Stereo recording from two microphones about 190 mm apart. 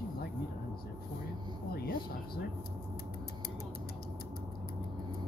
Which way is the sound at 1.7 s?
55° left (ahead or behind).